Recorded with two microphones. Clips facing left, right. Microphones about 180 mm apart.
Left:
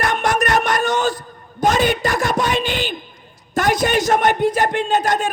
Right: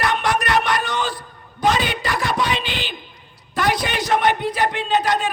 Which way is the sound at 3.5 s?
45° left (ahead or behind).